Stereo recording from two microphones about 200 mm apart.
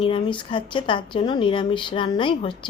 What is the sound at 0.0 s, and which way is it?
A woman's voice, 25° left (ahead or behind).